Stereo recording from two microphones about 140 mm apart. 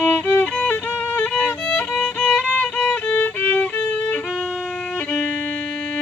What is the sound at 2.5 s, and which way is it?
Violin, 10° left (ahead or behind).